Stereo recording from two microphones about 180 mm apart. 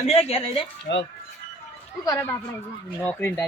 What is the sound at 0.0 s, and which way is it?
Speech, 35° left (ahead or behind).